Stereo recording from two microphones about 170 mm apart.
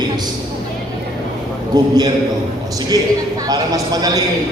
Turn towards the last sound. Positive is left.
turn(degrees=-20)  # may be behind; listen again after turning